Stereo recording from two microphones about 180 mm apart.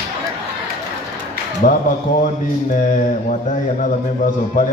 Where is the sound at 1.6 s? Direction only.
45° left (ahead or behind).